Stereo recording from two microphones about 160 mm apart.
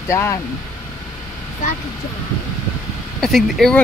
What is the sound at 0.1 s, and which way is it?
Speech, 15° left (ahead or behind).